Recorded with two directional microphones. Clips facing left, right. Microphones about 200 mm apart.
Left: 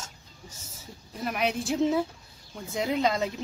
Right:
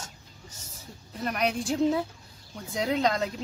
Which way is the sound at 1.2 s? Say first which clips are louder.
Even; centre (ahead or behind).